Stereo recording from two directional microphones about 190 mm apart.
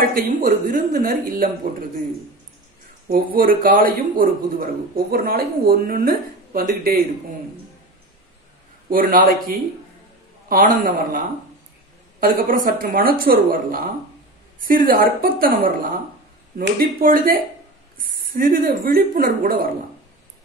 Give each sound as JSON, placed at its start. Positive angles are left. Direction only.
{"t": 0.1, "sound": "a man's voice", "side_deg": -50}
{"t": 3.1, "sound": "a man's voice", "side_deg": -50}
{"t": 8.8, "sound": "a man's voice", "side_deg": -45}
{"t": 12.2, "sound": "a man's voice", "side_deg": -50}